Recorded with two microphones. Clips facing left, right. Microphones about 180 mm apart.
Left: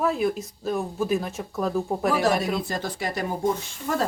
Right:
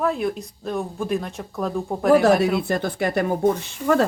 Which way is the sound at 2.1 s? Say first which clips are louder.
Right 9 dB; 55° right (ahead or behind).